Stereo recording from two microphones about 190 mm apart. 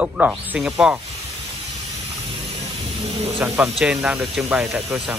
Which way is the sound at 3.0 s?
30° right (ahead or behind).